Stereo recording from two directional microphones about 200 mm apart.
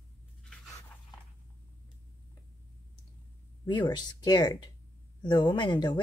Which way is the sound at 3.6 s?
20° left (ahead or behind).